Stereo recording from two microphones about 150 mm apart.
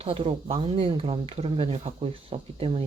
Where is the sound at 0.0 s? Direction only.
35° right (ahead or behind).